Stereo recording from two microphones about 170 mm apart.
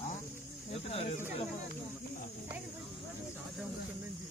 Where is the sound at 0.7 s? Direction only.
35° left (ahead or behind).